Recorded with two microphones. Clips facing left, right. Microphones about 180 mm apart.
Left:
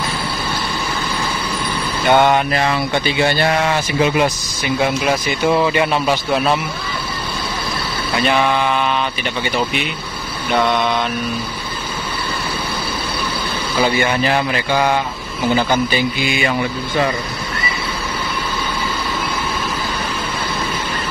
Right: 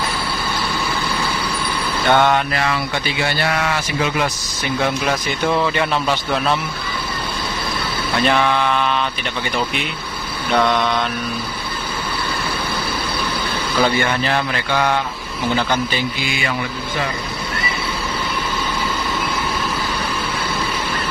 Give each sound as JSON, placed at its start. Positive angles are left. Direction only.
{"t": 2.0, "sound": "speech", "side_deg": 15}
{"t": 5.0, "sound": "a man's voice", "side_deg": 10}
{"t": 8.3, "sound": "mantra", "side_deg": 5}
{"t": 10.5, "sound": "mantra", "side_deg": 5}
{"t": 13.7, "sound": "a man's voice", "side_deg": 10}